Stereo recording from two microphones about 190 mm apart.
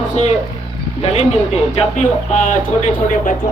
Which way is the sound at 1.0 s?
35° left (ahead or behind).